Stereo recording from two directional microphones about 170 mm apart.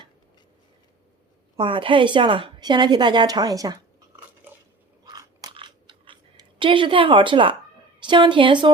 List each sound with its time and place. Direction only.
1.5 s a woman's voice: 30° right (ahead or behind)
5.0 s crunch: 25° right (ahead or behind)
8.0 s a woman's voice: 30° right (ahead or behind)